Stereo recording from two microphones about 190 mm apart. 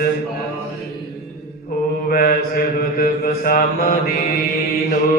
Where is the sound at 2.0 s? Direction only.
50° left (ahead or behind).